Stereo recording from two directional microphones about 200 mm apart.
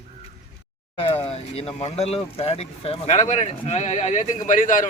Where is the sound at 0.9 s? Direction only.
30° left (ahead or behind).